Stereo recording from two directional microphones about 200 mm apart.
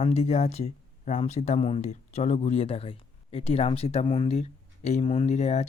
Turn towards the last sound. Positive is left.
turn(degrees=35)  # may be behind; listen again after turning